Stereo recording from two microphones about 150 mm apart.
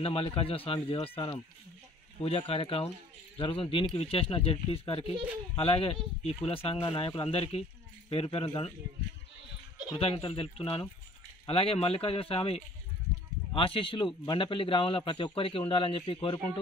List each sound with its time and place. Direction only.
0.0 s a man's voice: 35° left (ahead or behind)
9.9 s a man's voice: 35° left (ahead or behind)